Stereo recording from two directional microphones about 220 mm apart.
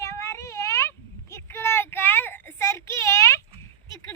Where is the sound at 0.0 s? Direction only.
10° left (ahead or behind).